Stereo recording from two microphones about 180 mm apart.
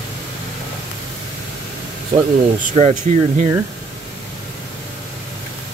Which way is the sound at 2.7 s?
40° right (ahead or behind).